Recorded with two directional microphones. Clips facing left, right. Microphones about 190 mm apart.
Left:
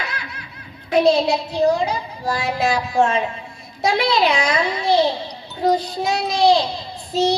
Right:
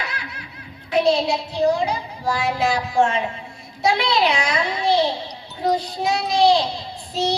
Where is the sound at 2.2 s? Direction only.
40° left (ahead or behind).